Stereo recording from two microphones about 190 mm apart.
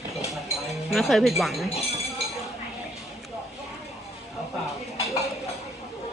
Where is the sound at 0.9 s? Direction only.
Centre (ahead or behind).